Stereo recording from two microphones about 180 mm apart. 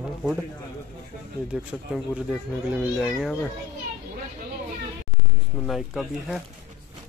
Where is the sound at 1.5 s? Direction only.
5° right (ahead or behind).